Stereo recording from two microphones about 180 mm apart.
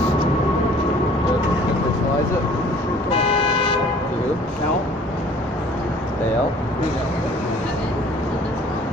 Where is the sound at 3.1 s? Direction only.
30° left (ahead or behind).